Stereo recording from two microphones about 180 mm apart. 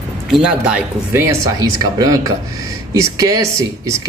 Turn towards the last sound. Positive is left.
turn(degrees=-15)  # may be behind; listen again after turning